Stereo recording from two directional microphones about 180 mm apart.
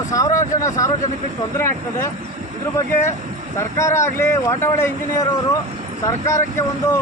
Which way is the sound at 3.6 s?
15° left (ahead or behind).